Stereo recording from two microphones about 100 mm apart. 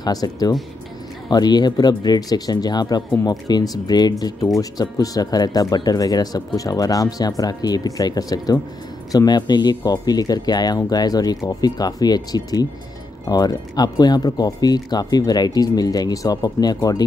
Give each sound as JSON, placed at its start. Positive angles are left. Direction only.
{"t": 0.0, "sound": "speech", "side_deg": 40}